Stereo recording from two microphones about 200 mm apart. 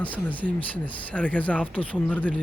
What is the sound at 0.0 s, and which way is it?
Speech, 10° left (ahead or behind).